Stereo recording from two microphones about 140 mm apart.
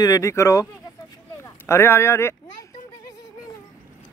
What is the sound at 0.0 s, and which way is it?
A woman's voice, 25° left (ahead or behind).